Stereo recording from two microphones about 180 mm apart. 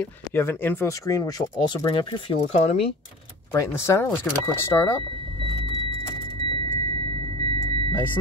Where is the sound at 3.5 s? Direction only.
15° left (ahead or behind).